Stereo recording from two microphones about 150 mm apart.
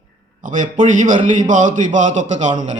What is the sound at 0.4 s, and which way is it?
A man's voice, 60° right (ahead or behind).